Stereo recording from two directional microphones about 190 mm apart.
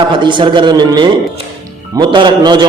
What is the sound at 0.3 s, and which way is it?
A man's voice, 25° right (ahead or behind).